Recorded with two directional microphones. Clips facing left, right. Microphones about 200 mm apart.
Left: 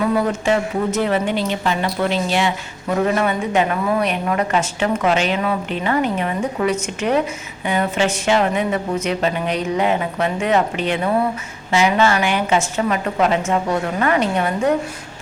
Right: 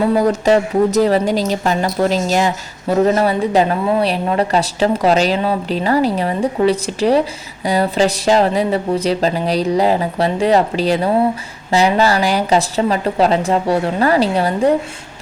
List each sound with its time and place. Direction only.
0.0 s speech: 35° right (ahead or behind)